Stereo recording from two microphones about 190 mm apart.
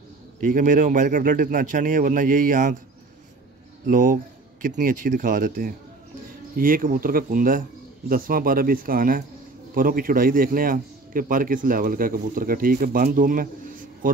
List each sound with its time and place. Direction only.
0.4 s a man's voice: 45° right (ahead or behind)
3.8 s a man's voice: 45° right (ahead or behind)